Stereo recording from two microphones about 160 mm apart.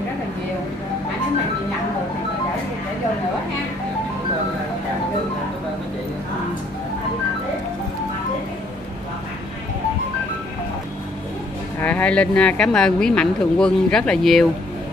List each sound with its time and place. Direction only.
11.8 s speech: 10° left (ahead or behind)